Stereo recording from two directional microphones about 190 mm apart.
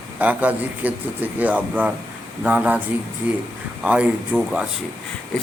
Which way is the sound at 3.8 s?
5° right (ahead or behind).